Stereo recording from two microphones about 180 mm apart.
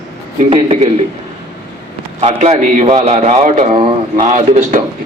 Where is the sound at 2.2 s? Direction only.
40° right (ahead or behind).